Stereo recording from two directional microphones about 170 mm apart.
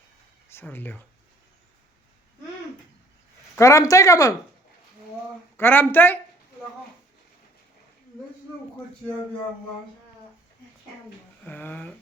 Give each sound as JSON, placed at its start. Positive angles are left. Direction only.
{"t": 0.5, "sound": "speech", "side_deg": 10}
{"t": 3.6, "sound": "speech", "side_deg": 20}
{"t": 5.5, "sound": "speech", "side_deg": 10}
{"t": 11.4, "sound": "speech", "side_deg": 10}